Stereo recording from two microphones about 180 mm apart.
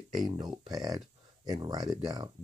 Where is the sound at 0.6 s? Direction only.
20° right (ahead or behind).